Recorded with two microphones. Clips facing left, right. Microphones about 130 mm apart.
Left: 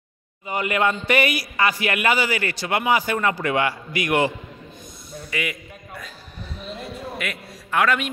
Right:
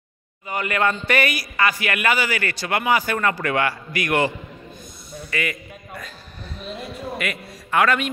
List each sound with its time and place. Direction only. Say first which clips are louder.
0.5 s a man's voice: even; 20° left (ahead or behind)
5.3 s a sound: right 2 dB; 10° left (ahead or behind)
7.2 s a man's voice: right 2 dB; centre (ahead or behind)